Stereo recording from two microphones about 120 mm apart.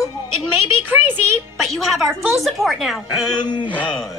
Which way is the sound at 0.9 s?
15° right (ahead or behind).